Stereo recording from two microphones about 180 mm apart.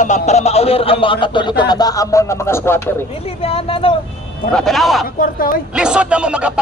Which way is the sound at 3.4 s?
30° left (ahead or behind).